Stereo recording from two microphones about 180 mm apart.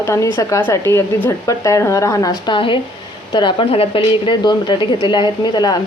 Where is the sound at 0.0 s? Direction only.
15° left (ahead or behind).